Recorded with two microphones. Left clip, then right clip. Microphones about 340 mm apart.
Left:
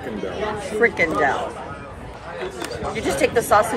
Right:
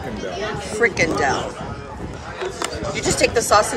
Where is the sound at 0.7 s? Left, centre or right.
Centre.